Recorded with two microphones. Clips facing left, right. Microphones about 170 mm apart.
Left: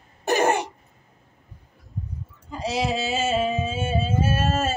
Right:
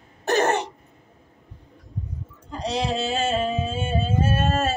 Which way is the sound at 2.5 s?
5° left (ahead or behind).